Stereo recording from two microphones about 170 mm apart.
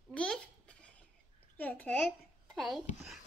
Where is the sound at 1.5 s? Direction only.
10° left (ahead or behind).